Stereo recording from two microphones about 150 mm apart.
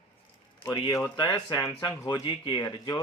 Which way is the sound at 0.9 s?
20° left (ahead or behind).